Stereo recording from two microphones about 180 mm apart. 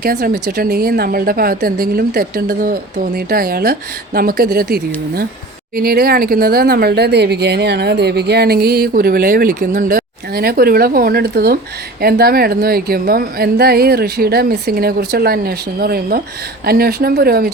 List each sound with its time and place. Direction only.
0.0 s speech: 55° right (ahead or behind)